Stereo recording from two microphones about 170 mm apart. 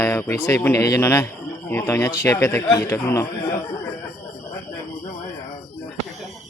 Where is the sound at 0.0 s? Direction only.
15° left (ahead or behind).